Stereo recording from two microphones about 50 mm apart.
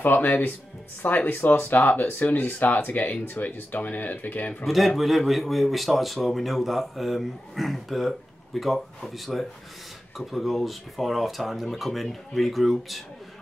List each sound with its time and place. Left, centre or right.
0.0 s speech: left
4.6 s speech: centre